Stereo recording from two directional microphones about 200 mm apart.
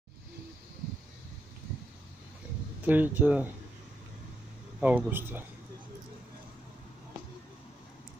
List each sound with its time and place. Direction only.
2.8 s speech: 10° right (ahead or behind)
4.7 s speech: 5° right (ahead or behind)